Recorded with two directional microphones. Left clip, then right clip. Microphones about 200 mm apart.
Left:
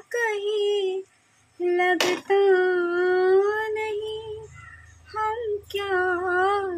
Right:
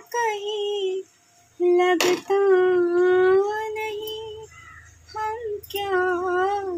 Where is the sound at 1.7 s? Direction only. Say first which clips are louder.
Right 2 dB; 10° left (ahead or behind).